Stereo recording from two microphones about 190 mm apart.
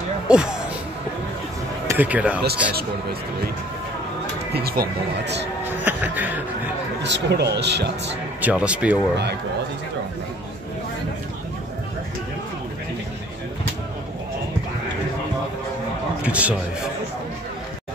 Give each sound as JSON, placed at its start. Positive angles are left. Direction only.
{"t": 0.3, "sound": "speech", "side_deg": -5}
{"t": 1.9, "sound": "speech", "side_deg": -10}
{"t": 4.6, "sound": "speech", "side_deg": -55}
{"t": 5.8, "sound": "speech", "side_deg": -10}
{"t": 7.0, "sound": "speech", "side_deg": -65}
{"t": 8.4, "sound": "speech", "side_deg": -5}
{"t": 16.3, "sound": "a man's voice", "side_deg": -5}